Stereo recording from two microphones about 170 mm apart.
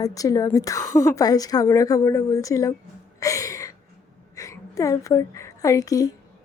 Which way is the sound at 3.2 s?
20° left (ahead or behind).